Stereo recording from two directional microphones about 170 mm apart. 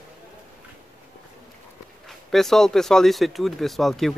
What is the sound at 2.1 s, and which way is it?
Speech, centre (ahead or behind).